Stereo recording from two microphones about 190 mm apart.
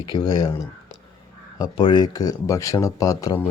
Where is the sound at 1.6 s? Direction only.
25° left (ahead or behind).